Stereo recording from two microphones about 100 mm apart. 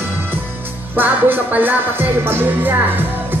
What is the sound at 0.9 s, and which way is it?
Music, 20° right (ahead or behind).